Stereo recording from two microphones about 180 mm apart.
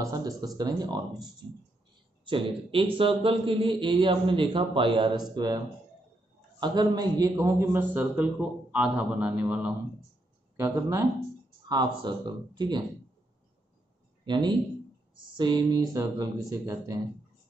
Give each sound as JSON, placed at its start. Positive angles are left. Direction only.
{"t": 0.0, "sound": "a man's voice", "side_deg": -20}
{"t": 2.2, "sound": "a man's voice", "side_deg": -30}
{"t": 6.6, "sound": "a man's voice", "side_deg": -25}
{"t": 14.2, "sound": "a man's voice", "side_deg": -25}